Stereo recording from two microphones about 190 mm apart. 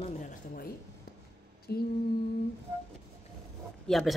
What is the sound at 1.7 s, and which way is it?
Mantra, 60° left (ahead or behind).